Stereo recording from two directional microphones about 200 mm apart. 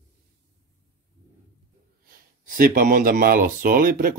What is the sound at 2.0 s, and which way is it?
Speech, 45° right (ahead or behind).